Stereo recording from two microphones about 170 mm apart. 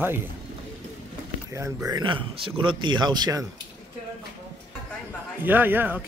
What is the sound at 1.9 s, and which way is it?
Speech, 30° right (ahead or behind).